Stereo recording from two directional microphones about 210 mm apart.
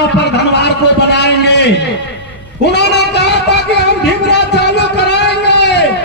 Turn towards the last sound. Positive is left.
turn(degrees=55)  # may be behind; listen again after turning